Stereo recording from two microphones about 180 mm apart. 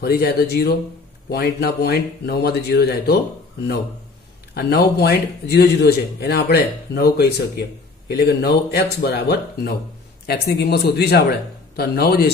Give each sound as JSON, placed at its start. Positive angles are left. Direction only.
{"t": 0.0, "sound": "a man's voice", "side_deg": 65}
{"t": 4.6, "sound": "a man's voice", "side_deg": 65}